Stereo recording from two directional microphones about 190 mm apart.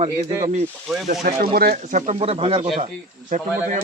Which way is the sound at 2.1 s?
30° right (ahead or behind).